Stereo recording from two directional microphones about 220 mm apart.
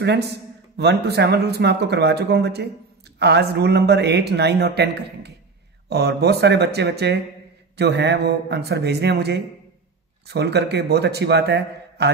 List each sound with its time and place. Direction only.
0.0 s a man's voice: 50° right (ahead or behind)